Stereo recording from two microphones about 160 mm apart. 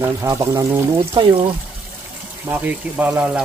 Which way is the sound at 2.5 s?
10° right (ahead or behind).